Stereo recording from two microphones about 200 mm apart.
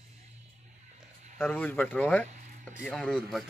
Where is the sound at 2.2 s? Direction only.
35° right (ahead or behind).